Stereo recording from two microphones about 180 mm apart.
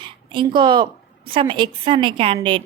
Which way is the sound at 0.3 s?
25° right (ahead or behind).